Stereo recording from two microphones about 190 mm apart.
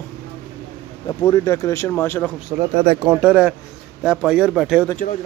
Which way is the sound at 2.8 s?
25° right (ahead or behind).